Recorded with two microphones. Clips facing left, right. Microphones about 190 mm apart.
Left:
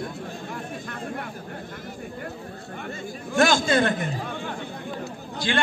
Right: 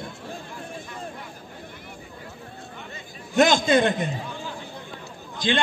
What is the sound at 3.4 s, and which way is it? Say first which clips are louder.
Speech: right 2 dB; 20° right (ahead or behind).